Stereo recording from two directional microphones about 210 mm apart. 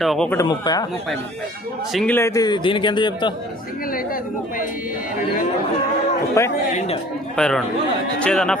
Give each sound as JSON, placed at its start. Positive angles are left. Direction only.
{"t": 0.0, "sound": "speech", "side_deg": 0}
{"t": 0.3, "sound": "speech", "side_deg": 20}
{"t": 1.9, "sound": "a man's voice", "side_deg": 5}
{"t": 3.9, "sound": "speech", "side_deg": 40}
{"t": 6.4, "sound": "speech", "side_deg": 15}
{"t": 6.7, "sound": "a man's voice", "side_deg": 30}
{"t": 7.3, "sound": "speech", "side_deg": 5}